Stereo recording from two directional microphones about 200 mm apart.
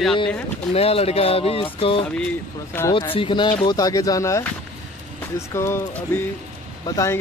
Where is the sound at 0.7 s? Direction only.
30° left (ahead or behind).